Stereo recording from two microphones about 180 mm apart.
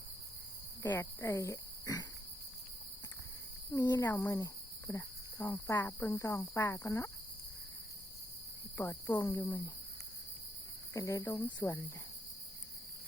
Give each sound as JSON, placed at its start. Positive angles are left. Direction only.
{"t": 0.8, "sound": "speech", "side_deg": 15}
{"t": 3.8, "sound": "cricket", "side_deg": 20}
{"t": 8.8, "sound": "cricket", "side_deg": 15}
{"t": 10.9, "sound": "cricket", "side_deg": 20}